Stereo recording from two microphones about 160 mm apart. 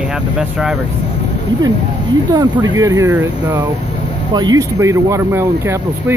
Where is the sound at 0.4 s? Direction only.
5° right (ahead or behind).